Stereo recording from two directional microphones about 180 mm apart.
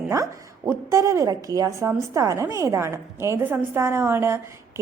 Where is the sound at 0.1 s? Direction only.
15° right (ahead or behind).